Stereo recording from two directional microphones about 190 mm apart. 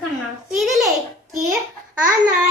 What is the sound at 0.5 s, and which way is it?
Babbling, centre (ahead or behind).